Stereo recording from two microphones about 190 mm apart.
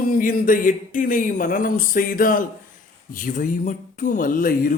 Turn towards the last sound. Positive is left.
turn(degrees=45)  # may be behind; listen again after turning